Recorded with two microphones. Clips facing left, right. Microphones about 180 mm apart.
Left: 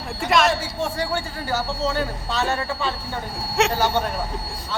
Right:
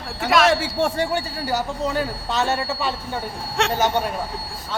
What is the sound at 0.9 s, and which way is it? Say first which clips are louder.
Speech: right 3 dB; 15° right (ahead or behind).